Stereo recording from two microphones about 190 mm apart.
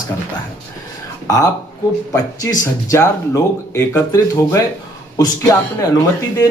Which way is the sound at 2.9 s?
15° left (ahead or behind).